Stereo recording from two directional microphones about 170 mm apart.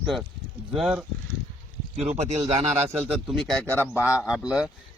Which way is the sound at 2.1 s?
40° right (ahead or behind).